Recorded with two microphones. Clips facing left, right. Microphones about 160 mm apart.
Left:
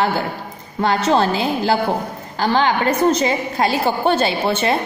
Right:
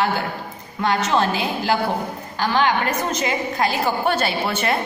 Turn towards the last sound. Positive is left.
turn(degrees=25)  # may be behind; listen again after turning